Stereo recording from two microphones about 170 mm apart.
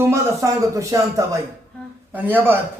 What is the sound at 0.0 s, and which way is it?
Speech, 15° right (ahead or behind).